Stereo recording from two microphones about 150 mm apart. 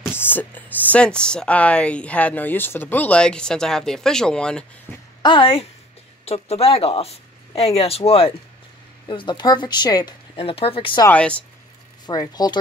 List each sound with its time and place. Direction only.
0.1 s speech: 15° left (ahead or behind)
5.2 s speech: 35° left (ahead or behind)
10.3 s speech: 40° left (ahead or behind)
11.1 s speech: 10° left (ahead or behind)
12.1 s speech: 25° left (ahead or behind)